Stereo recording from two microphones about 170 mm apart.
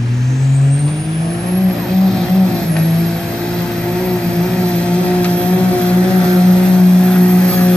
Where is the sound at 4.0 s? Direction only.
5° left (ahead or behind).